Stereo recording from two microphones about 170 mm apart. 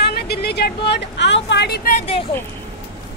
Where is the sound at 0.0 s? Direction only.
70° left (ahead or behind).